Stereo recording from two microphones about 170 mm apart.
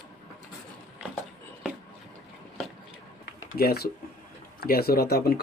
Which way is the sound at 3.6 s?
65° left (ahead or behind).